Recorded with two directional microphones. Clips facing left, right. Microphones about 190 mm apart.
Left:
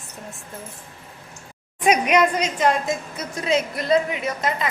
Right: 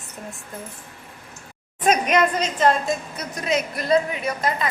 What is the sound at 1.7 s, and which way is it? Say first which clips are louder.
A woman's voice: left 1 dB; 10° left (ahead or behind).